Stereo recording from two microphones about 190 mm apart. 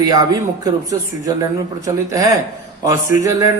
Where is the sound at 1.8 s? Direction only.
15° right (ahead or behind).